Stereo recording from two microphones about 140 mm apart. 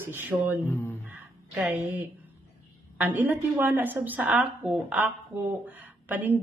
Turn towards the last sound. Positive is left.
turn(degrees=-10)  # may be behind; listen again after turning